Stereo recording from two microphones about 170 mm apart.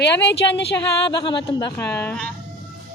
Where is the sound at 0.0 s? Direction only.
85° left.